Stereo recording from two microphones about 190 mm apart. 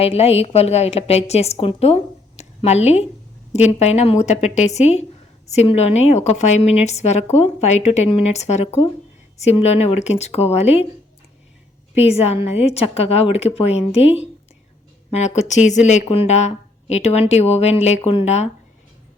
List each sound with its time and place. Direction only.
0.0 s a woman's voice: 30° left (ahead or behind)
11.9 s a woman's voice: 35° left (ahead or behind)
15.4 s a woman's voice: 40° left (ahead or behind)